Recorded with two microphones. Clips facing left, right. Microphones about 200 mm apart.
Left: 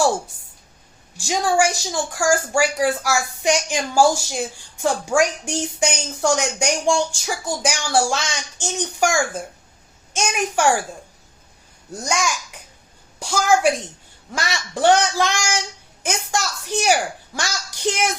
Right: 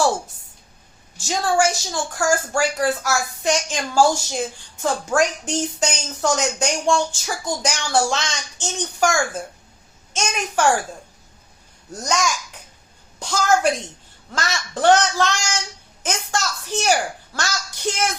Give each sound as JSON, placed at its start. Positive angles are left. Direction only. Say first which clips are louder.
{"t": 1.1, "sound": "a woman's voice", "louder": "left 1 dB", "side_deg": 15}
{"t": 11.9, "sound": "a woman's voice", "louder": "right 1 dB", "side_deg": 10}